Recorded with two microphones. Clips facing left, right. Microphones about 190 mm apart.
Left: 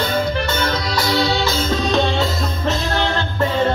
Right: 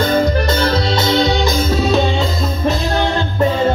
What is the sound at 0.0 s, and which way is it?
Music, 40° right (ahead or behind).